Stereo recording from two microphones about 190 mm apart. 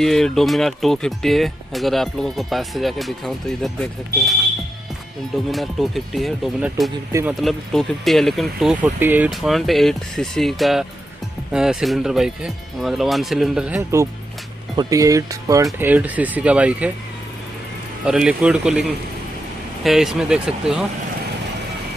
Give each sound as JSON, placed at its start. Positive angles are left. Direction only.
{"t": 0.0, "sound": "speech", "side_deg": 0}
{"t": 5.5, "sound": "speech", "side_deg": 0}
{"t": 7.1, "sound": "speech", "side_deg": -15}
{"t": 7.4, "sound": "speech", "side_deg": 0}
{"t": 18.0, "sound": "speech", "side_deg": -5}